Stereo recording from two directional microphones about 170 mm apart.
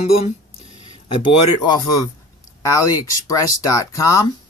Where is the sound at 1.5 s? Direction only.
25° left (ahead or behind).